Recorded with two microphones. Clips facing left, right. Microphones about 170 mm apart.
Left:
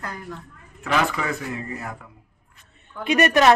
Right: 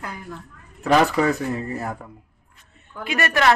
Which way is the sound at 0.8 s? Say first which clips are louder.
Right 6 dB; 40° right (ahead or behind).